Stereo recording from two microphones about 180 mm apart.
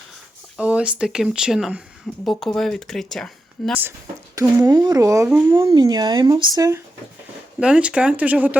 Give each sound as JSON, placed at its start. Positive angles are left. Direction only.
{"t": 0.5, "sound": "speech", "side_deg": -5}
{"t": 4.6, "sound": "speech", "side_deg": -20}
{"t": 7.6, "sound": "speech", "side_deg": -5}